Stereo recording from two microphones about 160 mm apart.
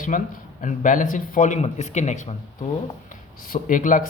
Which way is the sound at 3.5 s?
55° left (ahead or behind).